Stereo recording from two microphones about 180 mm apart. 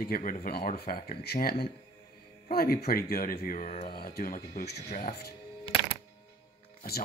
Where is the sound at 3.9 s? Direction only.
55° left (ahead or behind); by 5.2 s 40° left (ahead or behind).